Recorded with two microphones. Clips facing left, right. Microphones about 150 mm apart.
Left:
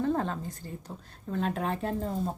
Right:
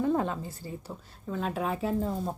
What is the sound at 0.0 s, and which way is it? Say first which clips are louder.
A woman's voice: right 1 dB; 10° right (ahead or behind).